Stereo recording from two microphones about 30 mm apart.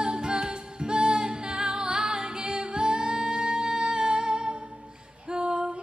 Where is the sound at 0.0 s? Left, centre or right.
Right.